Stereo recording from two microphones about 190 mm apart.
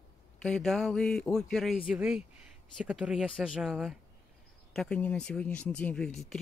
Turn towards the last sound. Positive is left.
turn(degrees=0)  # may be behind; listen again after turning